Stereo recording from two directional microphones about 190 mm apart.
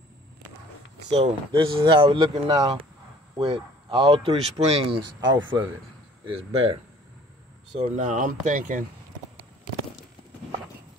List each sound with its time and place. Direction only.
1.1 s speech: 30° right (ahead or behind)
7.8 s speech: 40° right (ahead or behind)